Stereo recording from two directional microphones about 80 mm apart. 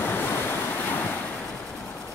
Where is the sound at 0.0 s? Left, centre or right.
Left.